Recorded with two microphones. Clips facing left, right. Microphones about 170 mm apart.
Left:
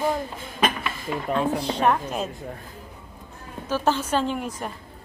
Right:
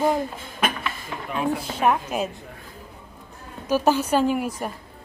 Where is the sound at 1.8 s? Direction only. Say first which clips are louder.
Right 2 dB; 10° right (ahead or behind).